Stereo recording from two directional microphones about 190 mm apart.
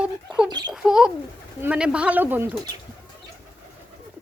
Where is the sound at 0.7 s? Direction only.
5° right (ahead or behind).